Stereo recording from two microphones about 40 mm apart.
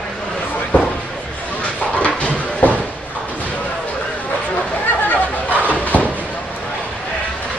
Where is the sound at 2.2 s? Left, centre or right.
Left.